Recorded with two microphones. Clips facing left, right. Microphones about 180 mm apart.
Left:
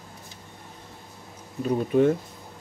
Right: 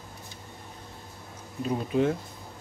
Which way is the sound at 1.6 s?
55° left (ahead or behind).